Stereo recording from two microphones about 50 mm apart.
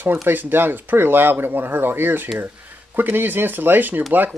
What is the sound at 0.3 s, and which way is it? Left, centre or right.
Speech, right.